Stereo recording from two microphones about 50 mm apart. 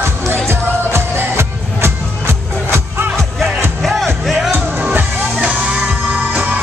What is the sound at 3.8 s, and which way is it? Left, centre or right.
Music, centre.